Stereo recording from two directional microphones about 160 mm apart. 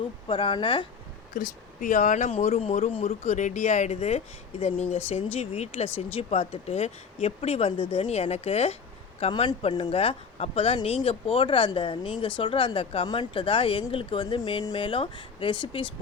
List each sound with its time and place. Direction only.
0.3 s speech: 30° left (ahead or behind)
1.3 s speech: 55° left (ahead or behind); by 15.9 s 30° left (ahead or behind)